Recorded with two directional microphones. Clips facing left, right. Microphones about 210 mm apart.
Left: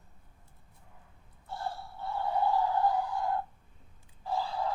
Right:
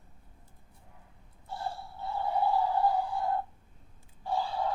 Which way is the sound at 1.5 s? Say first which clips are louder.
Even; 25° right (ahead or behind).